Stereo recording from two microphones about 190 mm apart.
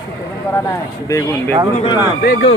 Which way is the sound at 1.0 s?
15° left (ahead or behind).